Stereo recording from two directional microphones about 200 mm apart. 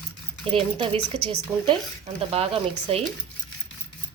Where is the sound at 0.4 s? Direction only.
30° right (ahead or behind).